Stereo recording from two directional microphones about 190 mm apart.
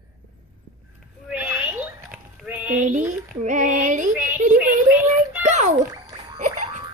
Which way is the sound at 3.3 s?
40° right (ahead or behind).